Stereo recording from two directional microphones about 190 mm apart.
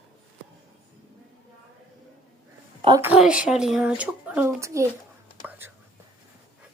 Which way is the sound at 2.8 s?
25° right (ahead or behind).